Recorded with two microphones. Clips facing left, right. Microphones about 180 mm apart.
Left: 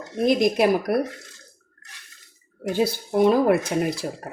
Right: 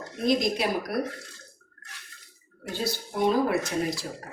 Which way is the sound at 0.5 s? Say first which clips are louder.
Left 8 dB; 55° left (ahead or behind).